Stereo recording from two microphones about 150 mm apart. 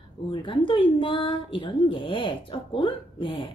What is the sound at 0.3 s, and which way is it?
Speech, 35° left (ahead or behind).